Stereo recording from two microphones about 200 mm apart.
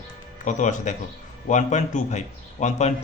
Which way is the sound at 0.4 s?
40° left (ahead or behind).